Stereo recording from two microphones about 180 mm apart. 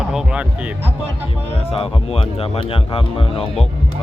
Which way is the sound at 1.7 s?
30° left (ahead or behind).